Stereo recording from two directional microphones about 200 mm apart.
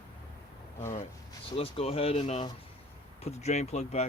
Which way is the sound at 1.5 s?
30° left (ahead or behind).